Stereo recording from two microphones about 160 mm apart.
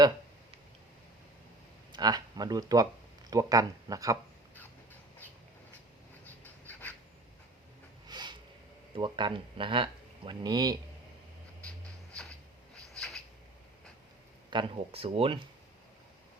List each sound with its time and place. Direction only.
1.9 s speech: 25° right (ahead or behind)
6.7 s writing: 10° left (ahead or behind)
8.0 s a sound: 25° right (ahead or behind)
9.0 s speech: 30° right (ahead or behind)
13.0 s a sound: centre (ahead or behind)
14.5 s speech: 30° right (ahead or behind)